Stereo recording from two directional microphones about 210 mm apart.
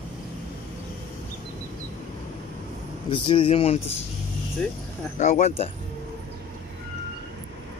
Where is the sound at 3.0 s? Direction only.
25° left (ahead or behind).